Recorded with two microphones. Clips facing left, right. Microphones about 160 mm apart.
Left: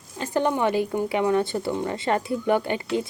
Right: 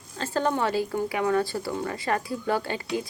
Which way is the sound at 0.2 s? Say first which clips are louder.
Left 3 dB; 15° left (ahead or behind).